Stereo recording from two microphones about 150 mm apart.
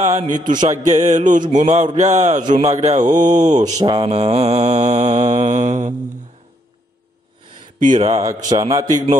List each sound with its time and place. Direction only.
0.0 s mantra: 50° right (ahead or behind)
3.0 s a man's voice: 30° right (ahead or behind)
3.3 s mantra: 55° right (ahead or behind)
3.7 s a man's voice: 30° right (ahead or behind)
4.1 s mantra: 45° right (ahead or behind)
7.8 s speech: 55° right (ahead or behind)
8.1 s a man's voice: 25° right (ahead or behind)